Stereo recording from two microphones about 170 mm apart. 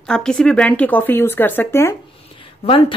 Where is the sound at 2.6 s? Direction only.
30° left (ahead or behind).